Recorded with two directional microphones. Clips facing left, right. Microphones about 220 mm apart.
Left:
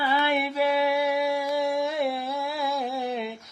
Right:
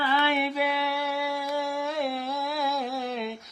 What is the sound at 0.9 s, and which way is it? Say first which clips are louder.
Male singing: left 6 dB; 15° left (ahead or behind).